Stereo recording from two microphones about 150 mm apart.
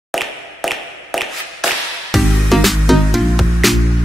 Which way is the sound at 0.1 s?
Centre (ahead or behind).